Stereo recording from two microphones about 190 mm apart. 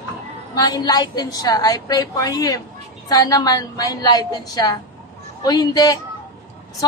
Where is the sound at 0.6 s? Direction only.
20° left (ahead or behind).